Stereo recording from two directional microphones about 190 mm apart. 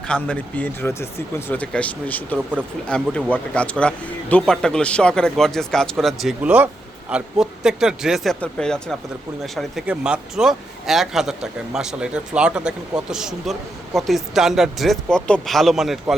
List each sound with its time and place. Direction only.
0.1 s speech: 5° left (ahead or behind)